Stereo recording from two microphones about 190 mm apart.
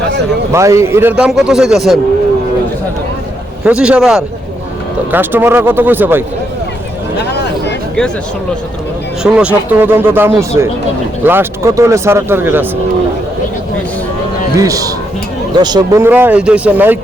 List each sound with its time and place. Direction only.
0.5 s a man's voice: 15° right (ahead or behind)
3.6 s a man's voice: 5° right (ahead or behind)
9.2 s speech: 5° right (ahead or behind)
14.5 s a man's voice: 20° right (ahead or behind)